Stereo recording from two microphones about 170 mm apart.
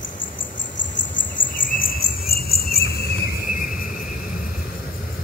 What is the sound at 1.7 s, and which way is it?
Cricket, 55° left (ahead or behind).